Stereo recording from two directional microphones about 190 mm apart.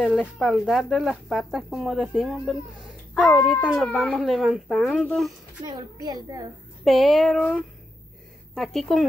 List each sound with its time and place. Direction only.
0.0 s speech: 5° left (ahead or behind)
5.7 s a child's voice: 20° right (ahead or behind)
6.8 s speech: centre (ahead or behind)